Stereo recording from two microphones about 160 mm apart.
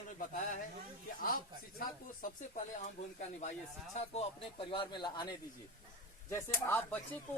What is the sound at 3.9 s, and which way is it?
A man's voice, 40° left (ahead or behind).